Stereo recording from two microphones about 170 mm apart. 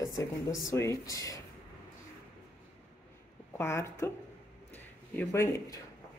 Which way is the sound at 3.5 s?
15° left (ahead or behind).